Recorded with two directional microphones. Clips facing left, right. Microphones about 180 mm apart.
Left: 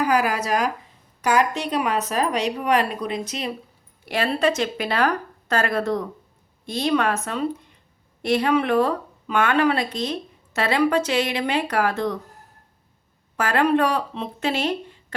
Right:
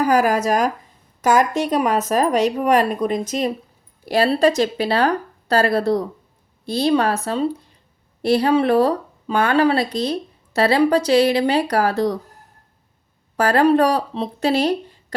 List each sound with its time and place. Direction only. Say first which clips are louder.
0.0 s a woman's voice: right 5 dB; 45° right (ahead or behind)
13.3 s speech: right 5 dB; 35° right (ahead or behind)